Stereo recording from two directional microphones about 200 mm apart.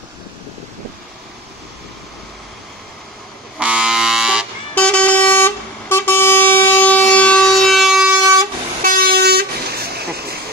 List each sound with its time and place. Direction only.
3.5 s a sound: 5° right (ahead or behind)
4.7 s vehicle: 5° left (ahead or behind)
8.8 s vehicle: 50° right (ahead or behind)